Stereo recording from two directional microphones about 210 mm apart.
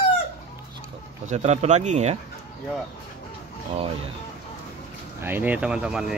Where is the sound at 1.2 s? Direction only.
30° right (ahead or behind).